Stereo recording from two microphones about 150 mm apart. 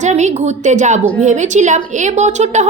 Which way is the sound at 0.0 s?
50° right (ahead or behind).